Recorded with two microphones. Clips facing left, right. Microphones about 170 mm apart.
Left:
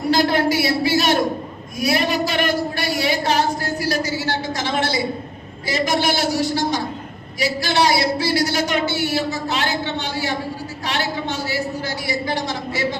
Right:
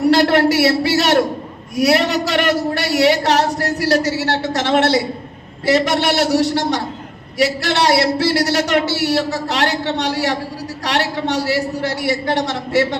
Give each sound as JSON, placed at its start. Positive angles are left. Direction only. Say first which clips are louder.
{"t": 0.0, "sound": "a man's voice", "louder": "right 5 dB", "side_deg": -75}